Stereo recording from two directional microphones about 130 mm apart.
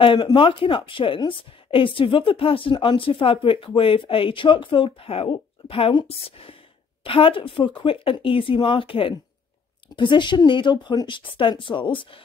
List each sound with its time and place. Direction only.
0.0 s a woman's voice: 40° left (ahead or behind)